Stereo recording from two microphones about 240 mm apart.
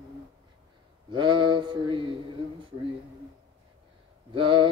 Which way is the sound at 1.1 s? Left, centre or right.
Centre.